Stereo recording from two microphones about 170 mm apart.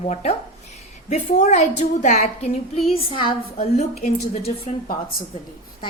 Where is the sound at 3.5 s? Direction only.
40° left (ahead or behind).